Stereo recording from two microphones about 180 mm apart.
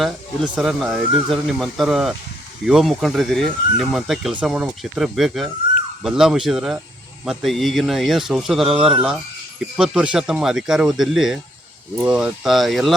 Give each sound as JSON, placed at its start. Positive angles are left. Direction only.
{"t": 0.5, "sound": "speech", "side_deg": 0}